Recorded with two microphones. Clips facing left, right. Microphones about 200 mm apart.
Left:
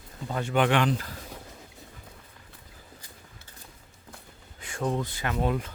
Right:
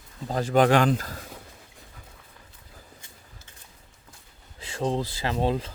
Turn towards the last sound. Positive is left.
turn(degrees=-30)  # may be behind; listen again after turning